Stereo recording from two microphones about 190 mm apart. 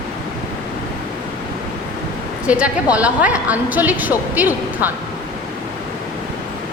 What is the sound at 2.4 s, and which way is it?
A woman's voice, 5° right (ahead or behind).